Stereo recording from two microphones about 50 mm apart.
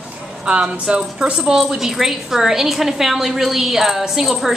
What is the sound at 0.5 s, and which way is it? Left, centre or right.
A woman's voice, right.